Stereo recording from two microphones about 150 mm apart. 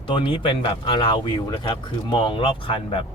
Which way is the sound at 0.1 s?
35° left (ahead or behind).